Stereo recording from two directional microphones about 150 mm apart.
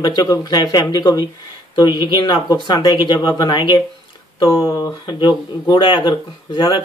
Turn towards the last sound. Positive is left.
turn(degrees=30)  # may be behind; listen again after turning